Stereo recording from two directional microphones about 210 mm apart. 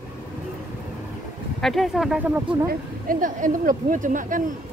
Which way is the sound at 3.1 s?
40° right (ahead or behind).